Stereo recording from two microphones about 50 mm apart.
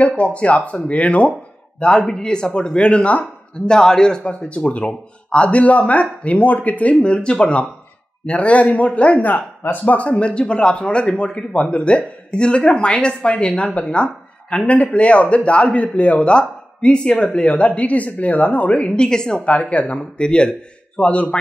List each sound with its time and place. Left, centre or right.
0.0 s a man's voice: left
3.6 s a man's voice: centre
4.4 s a man's voice: left
9.3 s speech: left
9.9 s a man's voice: left
19.0 s a man's voice: centre
19.5 s a man's voice: left